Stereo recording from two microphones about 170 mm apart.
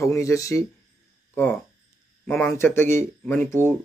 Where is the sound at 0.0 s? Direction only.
20° left (ahead or behind).